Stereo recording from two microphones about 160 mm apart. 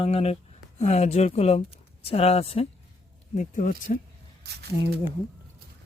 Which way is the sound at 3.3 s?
50° left (ahead or behind).